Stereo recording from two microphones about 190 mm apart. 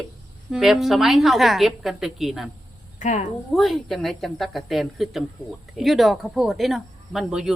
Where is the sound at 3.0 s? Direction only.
40° left (ahead or behind).